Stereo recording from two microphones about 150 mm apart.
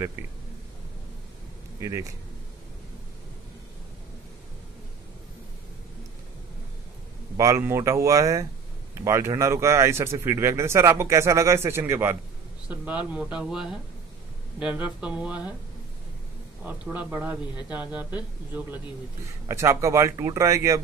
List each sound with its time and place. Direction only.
1.8 s speech: 20° right (ahead or behind)
7.3 s speech: 20° right (ahead or behind)
16.6 s speech: 10° right (ahead or behind)